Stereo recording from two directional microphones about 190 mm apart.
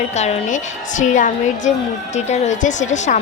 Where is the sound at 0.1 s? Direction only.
35° left (ahead or behind).